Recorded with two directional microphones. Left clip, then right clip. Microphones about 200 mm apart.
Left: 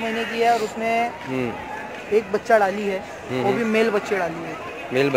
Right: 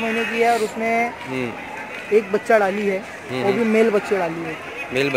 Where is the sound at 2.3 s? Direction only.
45° right (ahead or behind).